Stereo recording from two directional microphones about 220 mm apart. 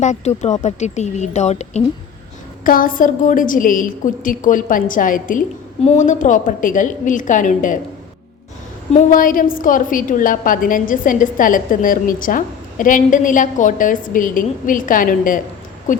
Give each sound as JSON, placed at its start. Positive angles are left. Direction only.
{"t": 0.0, "sound": "a woman's voice", "side_deg": 30}
{"t": 9.1, "sound": "a woman's voice", "side_deg": 40}